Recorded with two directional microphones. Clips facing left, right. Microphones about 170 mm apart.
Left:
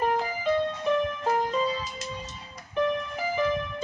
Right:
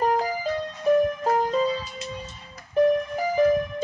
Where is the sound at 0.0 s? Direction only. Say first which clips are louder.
Right 3 dB; 35° right (ahead or behind).